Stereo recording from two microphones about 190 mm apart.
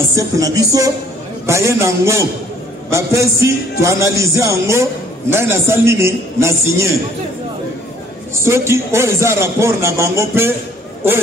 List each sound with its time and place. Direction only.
0.1 s speech: 15° right (ahead or behind)
8.4 s speech: 15° right (ahead or behind)